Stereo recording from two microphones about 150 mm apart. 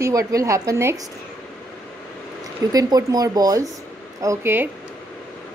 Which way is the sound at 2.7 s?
25° right (ahead or behind).